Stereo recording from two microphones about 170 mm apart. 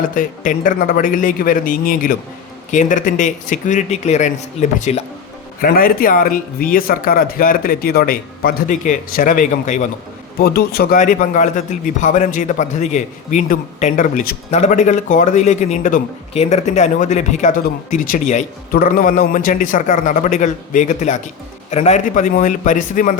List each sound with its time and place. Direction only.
0.1 s a man's voice: 50° left (ahead or behind)
5.6 s speech: 60° left (ahead or behind)
10.3 s a man's voice: 65° left (ahead or behind)